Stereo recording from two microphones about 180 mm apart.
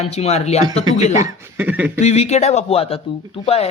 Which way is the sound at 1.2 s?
10° right (ahead or behind).